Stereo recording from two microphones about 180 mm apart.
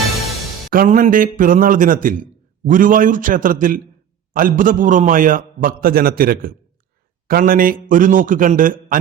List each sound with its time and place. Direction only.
0.7 s a man's voice: 50° right (ahead or behind)